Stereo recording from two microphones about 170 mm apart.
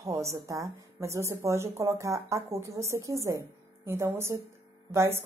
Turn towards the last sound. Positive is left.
turn(degrees=-15)  # may be behind; listen again after turning